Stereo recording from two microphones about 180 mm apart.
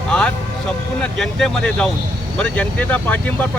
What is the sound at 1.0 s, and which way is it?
Speech, 5° left (ahead or behind).